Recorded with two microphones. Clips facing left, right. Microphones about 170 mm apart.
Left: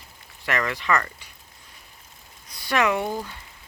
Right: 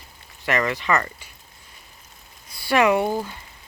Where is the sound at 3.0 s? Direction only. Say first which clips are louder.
Right 4 dB; 25° right (ahead or behind).